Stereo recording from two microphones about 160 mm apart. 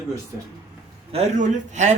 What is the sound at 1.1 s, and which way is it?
Speech, 45° right (ahead or behind).